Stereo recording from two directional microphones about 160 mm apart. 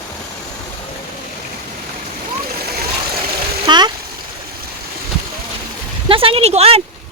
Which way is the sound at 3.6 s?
30° right (ahead or behind).